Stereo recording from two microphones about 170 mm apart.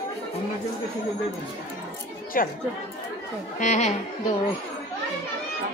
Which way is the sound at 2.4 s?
55° left (ahead or behind).